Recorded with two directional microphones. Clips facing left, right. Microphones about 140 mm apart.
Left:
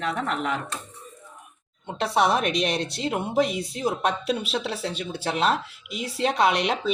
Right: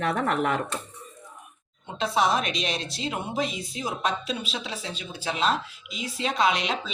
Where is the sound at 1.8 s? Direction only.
65° left (ahead or behind).